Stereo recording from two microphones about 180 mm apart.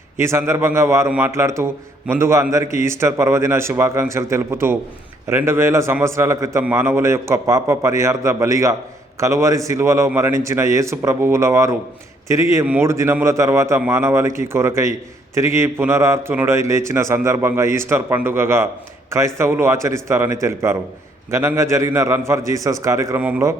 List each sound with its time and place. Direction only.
0.2 s a man's voice: 15° right (ahead or behind)